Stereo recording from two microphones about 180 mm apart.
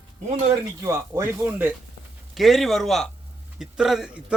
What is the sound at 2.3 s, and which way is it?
Speech, centre (ahead or behind).